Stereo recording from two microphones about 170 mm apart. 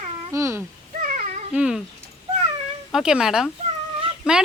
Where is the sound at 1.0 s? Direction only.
50° right (ahead or behind).